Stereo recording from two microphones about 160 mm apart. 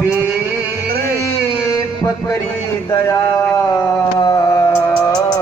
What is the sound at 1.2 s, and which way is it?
Music, 20° left (ahead or behind).